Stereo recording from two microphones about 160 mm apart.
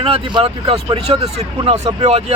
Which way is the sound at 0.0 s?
30° right (ahead or behind).